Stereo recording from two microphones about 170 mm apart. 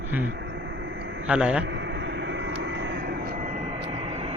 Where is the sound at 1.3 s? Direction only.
5° right (ahead or behind).